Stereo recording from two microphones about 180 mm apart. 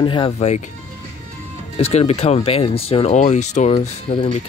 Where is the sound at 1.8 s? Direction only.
35° left (ahead or behind).